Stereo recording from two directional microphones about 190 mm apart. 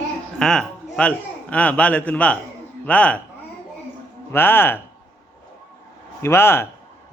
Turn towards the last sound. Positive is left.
turn(degrees=15)  # may be behind; listen again after turning